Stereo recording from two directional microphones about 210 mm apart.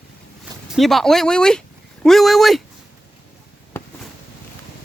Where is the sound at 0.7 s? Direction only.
Centre (ahead or behind).